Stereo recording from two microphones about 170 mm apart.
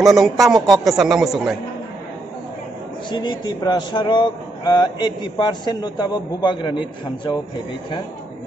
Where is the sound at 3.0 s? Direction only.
25° left (ahead or behind).